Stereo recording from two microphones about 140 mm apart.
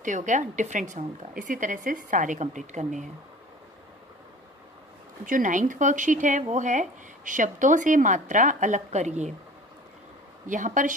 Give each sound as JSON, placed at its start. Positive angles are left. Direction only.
{"t": 0.0, "sound": "speech", "side_deg": -65}
{"t": 5.2, "sound": "speech", "side_deg": -70}
{"t": 10.4, "sound": "a woman's voice", "side_deg": -65}